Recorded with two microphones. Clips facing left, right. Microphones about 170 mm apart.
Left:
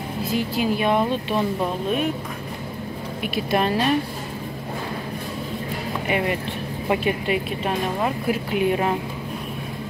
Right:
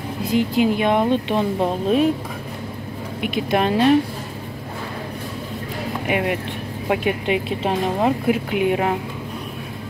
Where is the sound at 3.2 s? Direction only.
20° right (ahead or behind).